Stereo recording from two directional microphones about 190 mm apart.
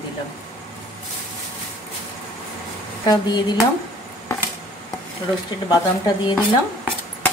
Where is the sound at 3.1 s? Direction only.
20° left (ahead or behind).